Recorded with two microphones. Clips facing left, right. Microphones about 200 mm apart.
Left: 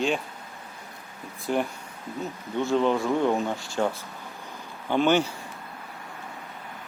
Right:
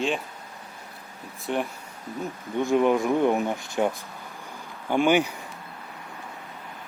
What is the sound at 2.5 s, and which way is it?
Speech, 15° right (ahead or behind).